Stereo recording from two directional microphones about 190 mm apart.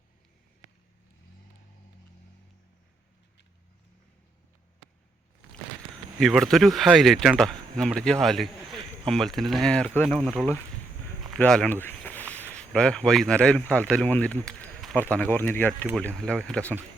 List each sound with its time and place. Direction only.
6.1 s speech: centre (ahead or behind)